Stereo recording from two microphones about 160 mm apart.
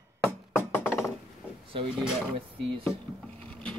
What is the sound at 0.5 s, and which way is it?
Music, 15° left (ahead or behind).